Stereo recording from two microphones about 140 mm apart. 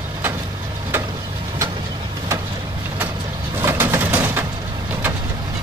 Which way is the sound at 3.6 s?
15° right (ahead or behind).